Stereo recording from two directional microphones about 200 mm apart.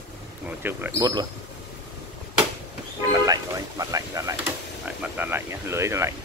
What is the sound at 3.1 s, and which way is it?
Speech, 15° right (ahead or behind).